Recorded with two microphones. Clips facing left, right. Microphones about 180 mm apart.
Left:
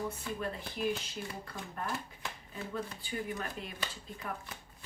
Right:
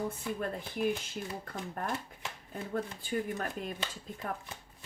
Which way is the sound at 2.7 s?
45° right (ahead or behind).